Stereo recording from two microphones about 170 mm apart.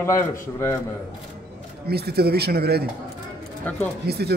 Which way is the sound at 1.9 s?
70° right (ahead or behind).